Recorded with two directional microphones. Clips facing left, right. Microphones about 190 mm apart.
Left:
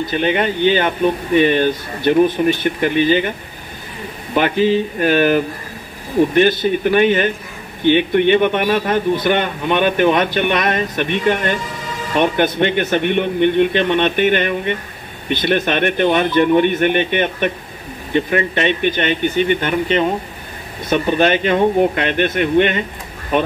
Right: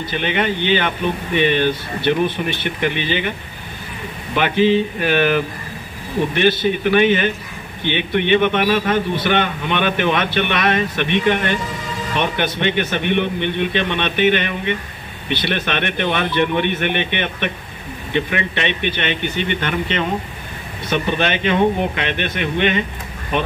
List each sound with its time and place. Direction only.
0.1 s a man's voice: 45° left (ahead or behind)
4.4 s a man's voice: 45° left (ahead or behind)
20.9 s a man's voice: 45° left (ahead or behind)